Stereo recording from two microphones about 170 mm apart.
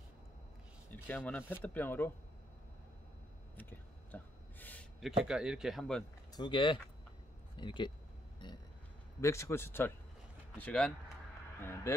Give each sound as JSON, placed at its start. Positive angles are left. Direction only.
{"t": 0.9, "sound": "speech", "side_deg": 10}
{"t": 3.5, "sound": "a sound", "side_deg": 10}
{"t": 5.0, "sound": "speech", "side_deg": -5}
{"t": 6.3, "sound": "speech", "side_deg": 30}
{"t": 9.2, "sound": "speech", "side_deg": 15}